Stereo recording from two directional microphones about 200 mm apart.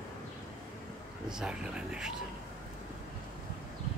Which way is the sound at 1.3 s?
5° right (ahead or behind).